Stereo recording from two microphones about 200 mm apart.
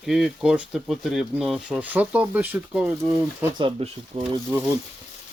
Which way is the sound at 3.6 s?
25° right (ahead or behind).